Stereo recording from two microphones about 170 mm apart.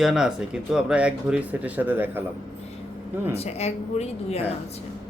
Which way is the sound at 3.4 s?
40° left (ahead or behind).